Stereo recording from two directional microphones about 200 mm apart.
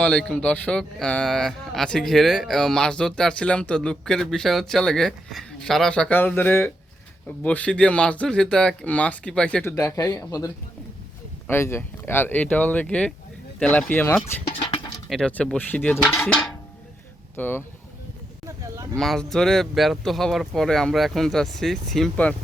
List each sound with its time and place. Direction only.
0.0 s speech: 5° left (ahead or behind)
9.7 s speech: 15° left (ahead or behind)
18.4 s livestock: 15° right (ahead or behind)
18.9 s speech: centre (ahead or behind)